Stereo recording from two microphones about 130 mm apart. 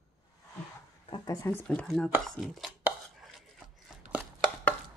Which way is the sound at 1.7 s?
5° left (ahead or behind).